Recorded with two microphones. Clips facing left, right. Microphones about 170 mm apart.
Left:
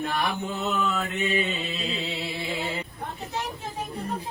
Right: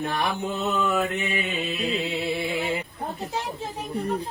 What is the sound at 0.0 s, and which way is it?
Mantra, 20° right (ahead or behind).